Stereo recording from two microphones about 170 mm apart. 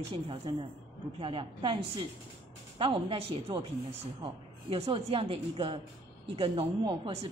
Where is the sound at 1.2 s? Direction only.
30° right (ahead or behind).